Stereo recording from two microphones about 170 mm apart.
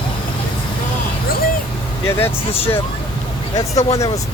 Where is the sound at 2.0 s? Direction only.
15° left (ahead or behind).